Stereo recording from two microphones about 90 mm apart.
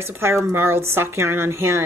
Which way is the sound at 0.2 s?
30° right (ahead or behind).